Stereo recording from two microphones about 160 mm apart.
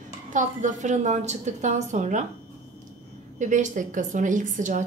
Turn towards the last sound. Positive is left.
turn(degrees=-50)  # may be behind; listen again after turning